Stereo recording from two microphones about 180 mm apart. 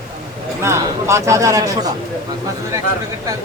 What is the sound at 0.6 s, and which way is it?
Speech, 15° right (ahead or behind).